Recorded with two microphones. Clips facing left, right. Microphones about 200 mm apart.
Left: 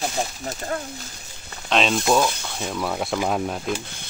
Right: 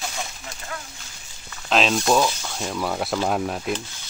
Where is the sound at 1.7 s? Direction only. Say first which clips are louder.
Even; centre (ahead or behind).